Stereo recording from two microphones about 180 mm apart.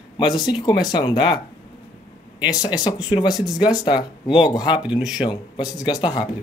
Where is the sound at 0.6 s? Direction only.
20° left (ahead or behind).